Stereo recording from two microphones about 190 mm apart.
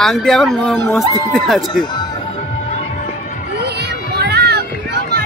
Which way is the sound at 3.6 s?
60° right (ahead or behind).